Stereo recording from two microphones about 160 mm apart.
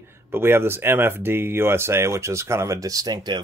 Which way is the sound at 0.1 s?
15° right (ahead or behind).